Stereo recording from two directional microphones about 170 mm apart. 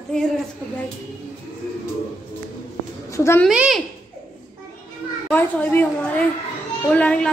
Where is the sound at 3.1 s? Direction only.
15° left (ahead or behind).